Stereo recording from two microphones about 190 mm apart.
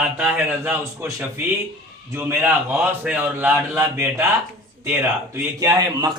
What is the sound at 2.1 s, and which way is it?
A man's voice, 10° right (ahead or behind).